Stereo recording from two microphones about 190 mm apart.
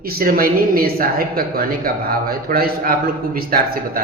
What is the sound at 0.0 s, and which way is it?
A woman's voice, 50° right (ahead or behind).